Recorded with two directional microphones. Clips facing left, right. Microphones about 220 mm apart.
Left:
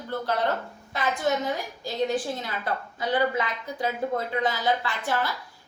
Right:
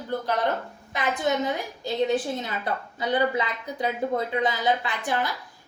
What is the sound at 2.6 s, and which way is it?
Speech, 20° right (ahead or behind).